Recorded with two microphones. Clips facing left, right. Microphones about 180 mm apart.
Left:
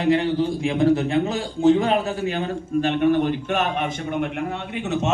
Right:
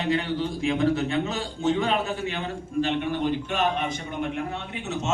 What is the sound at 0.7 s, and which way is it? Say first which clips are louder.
A man's voice: left 4 dB; 35° left (ahead or behind).